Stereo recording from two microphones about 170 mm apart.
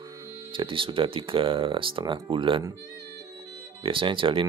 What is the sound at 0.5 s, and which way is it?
Speech, 30° right (ahead or behind).